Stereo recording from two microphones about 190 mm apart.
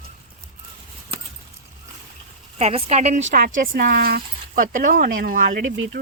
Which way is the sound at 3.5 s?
45° right (ahead or behind).